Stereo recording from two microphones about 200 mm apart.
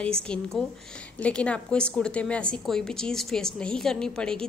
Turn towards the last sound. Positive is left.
turn(degrees=5)  # may be behind; listen again after turning